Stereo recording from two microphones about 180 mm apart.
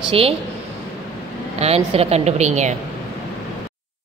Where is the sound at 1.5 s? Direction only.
35° right (ahead or behind).